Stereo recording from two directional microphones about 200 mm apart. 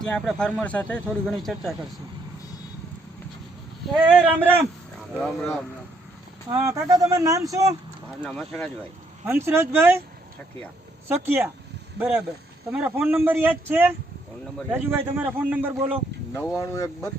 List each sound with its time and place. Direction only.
0.1 s speech: 5° left (ahead or behind)
3.9 s a man's voice: 5° right (ahead or behind)
5.2 s speech: 5° left (ahead or behind)
6.5 s a man's voice: 15° right (ahead or behind)
8.2 s speech: centre (ahead or behind)
9.2 s a man's voice: 10° right (ahead or behind)
11.3 s a man's voice: 10° right (ahead or behind)
16.6 s speech: 15° left (ahead or behind)